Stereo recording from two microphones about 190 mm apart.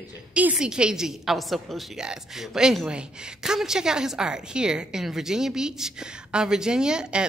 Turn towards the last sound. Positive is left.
turn(degrees=-5)  # may be behind; listen again after turning